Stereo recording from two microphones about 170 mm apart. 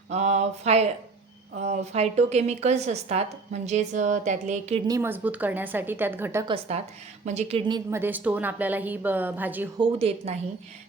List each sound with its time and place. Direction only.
0.1 s a woman's voice: 40° right (ahead or behind)
4.9 s a woman's voice: 15° right (ahead or behind)
6.4 s a woman's voice: 35° right (ahead or behind)
7.7 s a woman's voice: 15° right (ahead or behind)
10.0 s a woman's voice: 40° right (ahead or behind)